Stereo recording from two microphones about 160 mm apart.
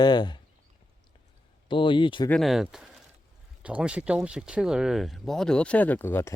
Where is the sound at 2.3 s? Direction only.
Centre (ahead or behind).